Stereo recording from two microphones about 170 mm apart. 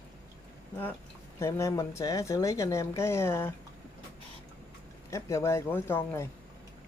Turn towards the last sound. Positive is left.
turn(degrees=15)  # may be behind; listen again after turning